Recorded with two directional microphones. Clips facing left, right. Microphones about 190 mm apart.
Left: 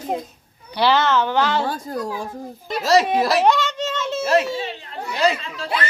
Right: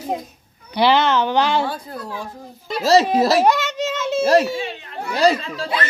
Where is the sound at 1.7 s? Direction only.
45° left (ahead or behind).